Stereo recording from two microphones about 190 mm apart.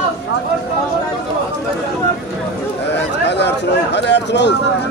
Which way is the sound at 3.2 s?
65° left (ahead or behind).